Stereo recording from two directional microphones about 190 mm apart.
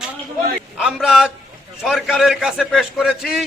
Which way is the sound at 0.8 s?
5° right (ahead or behind).